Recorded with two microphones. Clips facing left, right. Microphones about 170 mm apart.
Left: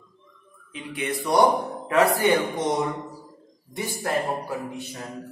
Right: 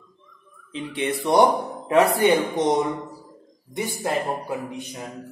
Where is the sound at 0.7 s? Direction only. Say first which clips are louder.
Right 3 dB; 30° right (ahead or behind).